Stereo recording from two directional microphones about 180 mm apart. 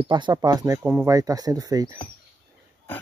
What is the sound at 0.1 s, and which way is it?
Speech, 25° right (ahead or behind).